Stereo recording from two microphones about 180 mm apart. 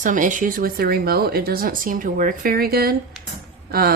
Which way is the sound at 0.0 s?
45° right (ahead or behind).